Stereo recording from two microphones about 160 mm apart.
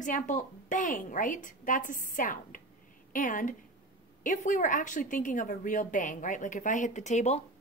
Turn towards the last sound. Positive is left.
turn(degrees=45)  # may be behind; listen again after turning